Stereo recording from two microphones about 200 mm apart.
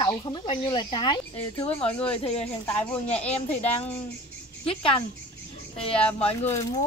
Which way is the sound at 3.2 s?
30° left (ahead or behind).